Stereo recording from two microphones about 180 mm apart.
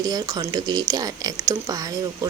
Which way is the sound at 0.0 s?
20° right (ahead or behind).